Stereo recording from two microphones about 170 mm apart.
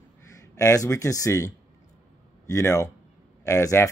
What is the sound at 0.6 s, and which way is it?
Speech, 20° left (ahead or behind).